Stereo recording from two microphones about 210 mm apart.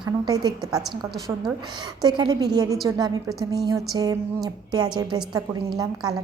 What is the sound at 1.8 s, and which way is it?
A woman's voice, 20° right (ahead or behind).